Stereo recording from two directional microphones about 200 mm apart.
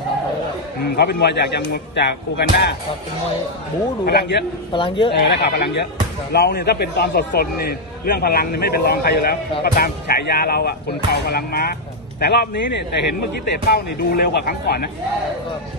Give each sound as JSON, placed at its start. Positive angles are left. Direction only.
{"t": 0.8, "sound": "a man's voice", "side_deg": 55}
{"t": 4.0, "sound": "a man's voice", "side_deg": 55}
{"t": 4.7, "sound": "speech", "side_deg": 25}
{"t": 5.1, "sound": "a man's voice", "side_deg": 55}